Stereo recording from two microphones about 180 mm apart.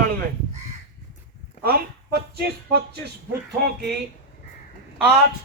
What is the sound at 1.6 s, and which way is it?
A woman's voice, 60° right (ahead or behind).